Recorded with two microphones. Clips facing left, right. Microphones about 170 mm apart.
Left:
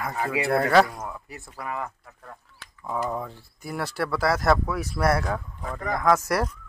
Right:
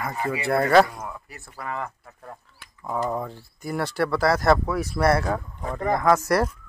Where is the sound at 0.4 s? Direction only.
Centre (ahead or behind).